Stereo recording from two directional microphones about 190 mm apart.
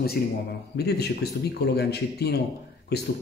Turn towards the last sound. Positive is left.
turn(degrees=60)  # may be behind; listen again after turning